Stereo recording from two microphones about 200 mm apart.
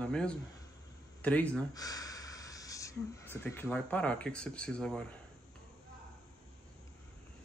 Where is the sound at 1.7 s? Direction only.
20° left (ahead or behind); by 5.0 s 5° left (ahead or behind).